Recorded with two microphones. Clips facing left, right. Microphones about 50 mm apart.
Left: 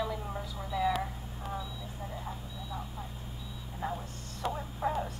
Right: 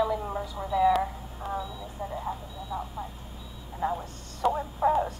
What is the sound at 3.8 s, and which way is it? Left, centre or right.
Speech, centre.